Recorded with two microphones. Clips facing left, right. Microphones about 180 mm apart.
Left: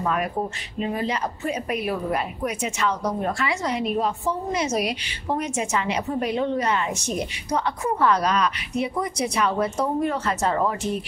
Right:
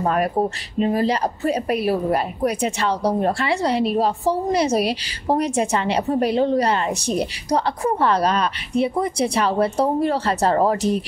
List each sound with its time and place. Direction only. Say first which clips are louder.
0.0 s a woman's voice: right 5 dB; 40° right (ahead or behind)